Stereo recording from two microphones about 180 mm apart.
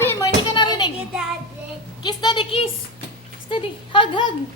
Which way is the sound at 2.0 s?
25° left (ahead or behind).